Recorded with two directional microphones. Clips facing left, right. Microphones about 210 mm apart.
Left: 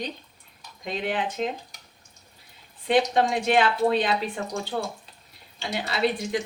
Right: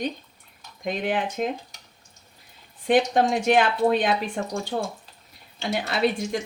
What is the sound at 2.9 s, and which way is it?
Speech, 50° right (ahead or behind).